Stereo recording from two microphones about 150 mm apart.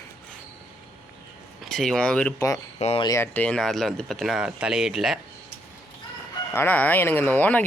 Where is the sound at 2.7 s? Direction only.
45° left (ahead or behind).